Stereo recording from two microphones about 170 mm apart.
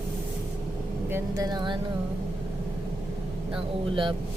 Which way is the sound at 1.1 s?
20° right (ahead or behind).